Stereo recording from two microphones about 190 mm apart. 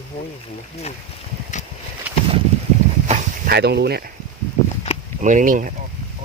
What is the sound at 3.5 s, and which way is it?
Speech, 60° right (ahead or behind).